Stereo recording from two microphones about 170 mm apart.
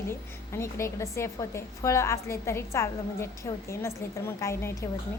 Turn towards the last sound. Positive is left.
turn(degrees=15)  # may be behind; listen again after turning